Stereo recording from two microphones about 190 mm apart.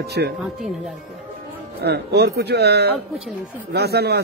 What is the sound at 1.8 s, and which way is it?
Speech, 60° right (ahead or behind).